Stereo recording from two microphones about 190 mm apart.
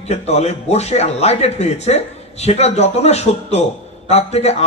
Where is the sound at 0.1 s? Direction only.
35° left (ahead or behind).